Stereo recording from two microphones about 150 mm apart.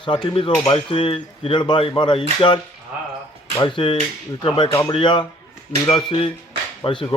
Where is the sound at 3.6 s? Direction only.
35° left (ahead or behind).